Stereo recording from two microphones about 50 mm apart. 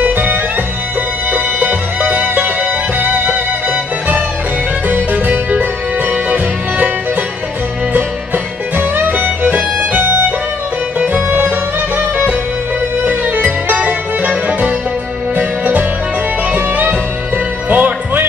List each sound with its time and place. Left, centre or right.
0.0 s music: right
4.8 s music: right
8.7 s music: right
13.0 s music: right